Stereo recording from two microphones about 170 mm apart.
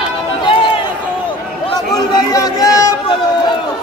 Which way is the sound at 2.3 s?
20° left (ahead or behind).